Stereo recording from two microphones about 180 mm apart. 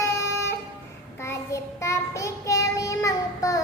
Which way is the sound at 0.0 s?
15° left (ahead or behind).